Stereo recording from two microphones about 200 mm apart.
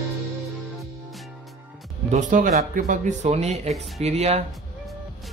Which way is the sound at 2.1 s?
40° right (ahead or behind).